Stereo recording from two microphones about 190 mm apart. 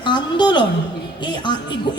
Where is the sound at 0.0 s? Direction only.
25° left (ahead or behind).